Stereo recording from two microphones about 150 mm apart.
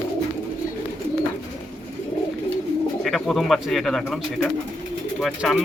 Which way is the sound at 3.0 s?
Centre (ahead or behind).